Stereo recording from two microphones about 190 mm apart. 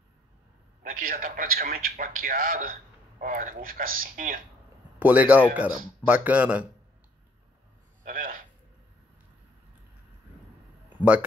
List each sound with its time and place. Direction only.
0.8 s a man's voice: 50° right (ahead or behind)
4.9 s speech: 10° right (ahead or behind)
8.0 s a sound: 45° right (ahead or behind)